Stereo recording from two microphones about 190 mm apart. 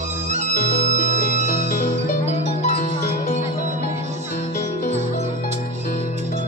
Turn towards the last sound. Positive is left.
turn(degrees=40)  # may be behind; listen again after turning